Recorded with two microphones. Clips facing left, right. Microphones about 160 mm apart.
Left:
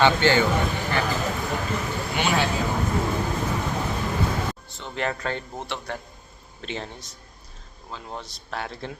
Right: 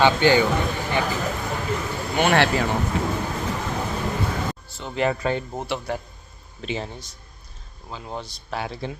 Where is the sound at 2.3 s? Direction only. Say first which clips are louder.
Right 5 dB; 75° right (ahead or behind).